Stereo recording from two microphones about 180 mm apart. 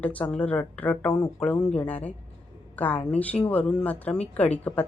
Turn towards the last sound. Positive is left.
turn(degrees=10)  # may be behind; listen again after turning